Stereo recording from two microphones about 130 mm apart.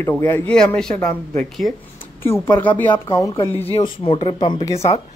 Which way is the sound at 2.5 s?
40° left (ahead or behind).